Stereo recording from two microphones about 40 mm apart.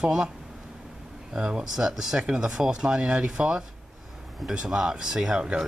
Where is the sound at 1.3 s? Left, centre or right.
Centre.